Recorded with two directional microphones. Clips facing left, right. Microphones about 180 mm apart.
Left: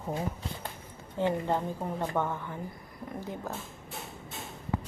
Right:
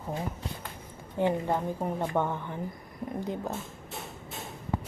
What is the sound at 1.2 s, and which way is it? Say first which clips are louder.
Speech: right 1 dB; 15° right (ahead or behind).